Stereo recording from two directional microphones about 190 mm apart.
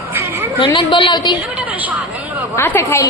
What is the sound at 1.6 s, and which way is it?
Speech, 10° right (ahead or behind).